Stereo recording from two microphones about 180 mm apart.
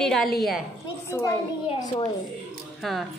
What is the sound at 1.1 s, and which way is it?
Speech, 15° left (ahead or behind).